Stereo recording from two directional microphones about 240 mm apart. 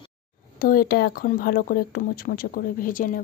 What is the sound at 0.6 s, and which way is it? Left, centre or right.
Speech, left.